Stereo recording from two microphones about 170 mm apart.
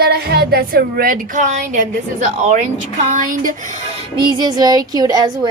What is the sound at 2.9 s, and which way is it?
Speech, 45° right (ahead or behind).